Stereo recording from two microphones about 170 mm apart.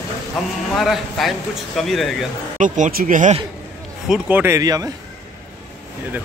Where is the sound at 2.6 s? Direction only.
50° right (ahead or behind).